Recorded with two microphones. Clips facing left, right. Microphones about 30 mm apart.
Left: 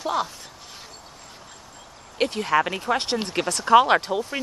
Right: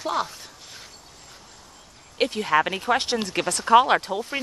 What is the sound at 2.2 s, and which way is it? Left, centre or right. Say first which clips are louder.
Speech: even; centre.